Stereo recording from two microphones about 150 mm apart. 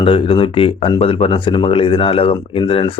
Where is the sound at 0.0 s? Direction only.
35° left (ahead or behind).